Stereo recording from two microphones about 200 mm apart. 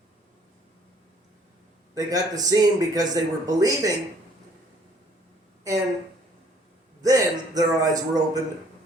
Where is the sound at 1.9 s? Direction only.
15° right (ahead or behind).